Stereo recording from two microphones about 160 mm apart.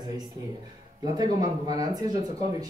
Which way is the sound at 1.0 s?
25° right (ahead or behind).